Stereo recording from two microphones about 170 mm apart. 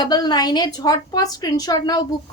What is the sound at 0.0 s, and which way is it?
A woman's voice, 25° left (ahead or behind).